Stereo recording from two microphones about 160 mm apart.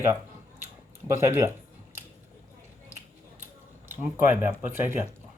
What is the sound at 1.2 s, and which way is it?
Speech, 15° right (ahead or behind).